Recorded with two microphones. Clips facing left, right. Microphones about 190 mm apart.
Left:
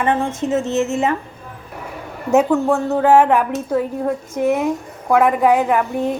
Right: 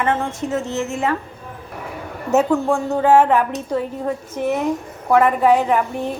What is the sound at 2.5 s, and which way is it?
A woman's voice, centre (ahead or behind).